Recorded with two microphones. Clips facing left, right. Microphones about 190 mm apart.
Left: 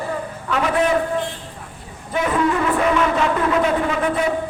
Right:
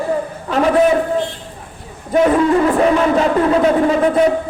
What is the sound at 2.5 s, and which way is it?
Speech, 35° right (ahead or behind).